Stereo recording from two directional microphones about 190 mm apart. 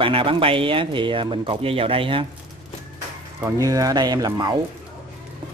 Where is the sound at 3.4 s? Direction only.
15° right (ahead or behind).